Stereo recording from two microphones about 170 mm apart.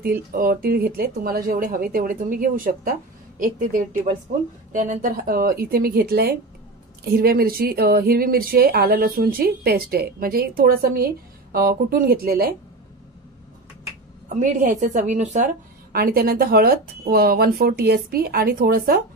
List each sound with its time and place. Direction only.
0.0 s a woman's voice: 60° right (ahead or behind)
14.4 s a woman's voice: 50° right (ahead or behind)